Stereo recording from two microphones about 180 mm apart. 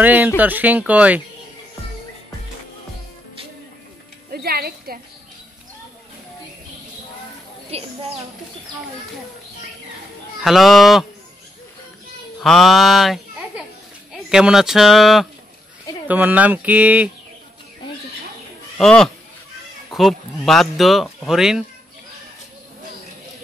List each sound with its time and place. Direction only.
0.0 s speech: 10° right (ahead or behind)
4.3 s speech: 60° right (ahead or behind)
7.7 s a woman's voice: 35° right (ahead or behind)
10.4 s speech: centre (ahead or behind)
12.4 s a child's voice: centre (ahead or behind)
18.8 s speech: 5° left (ahead or behind)